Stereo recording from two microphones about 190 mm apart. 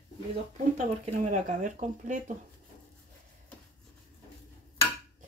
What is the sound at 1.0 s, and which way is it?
Speech, 40° right (ahead or behind).